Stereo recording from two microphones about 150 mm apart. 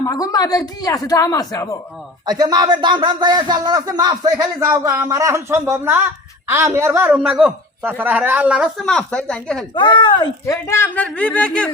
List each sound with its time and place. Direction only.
0.0 s a man's voice: 25° left (ahead or behind)
2.2 s a man's voice: 25° right (ahead or behind); by 8.7 s 5° right (ahead or behind)
8.9 s speech: 5° left (ahead or behind)
9.7 s speech: 30° left (ahead or behind)
10.4 s speech: 20° left (ahead or behind)